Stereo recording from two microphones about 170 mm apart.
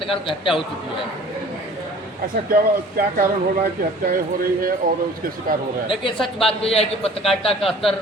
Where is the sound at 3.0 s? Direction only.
60° right (ahead or behind).